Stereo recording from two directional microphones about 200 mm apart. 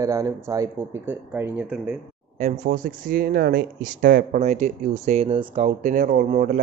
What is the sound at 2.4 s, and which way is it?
Speech, 40° right (ahead or behind).